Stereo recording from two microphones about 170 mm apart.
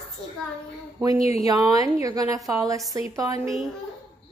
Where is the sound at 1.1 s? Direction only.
35° left (ahead or behind).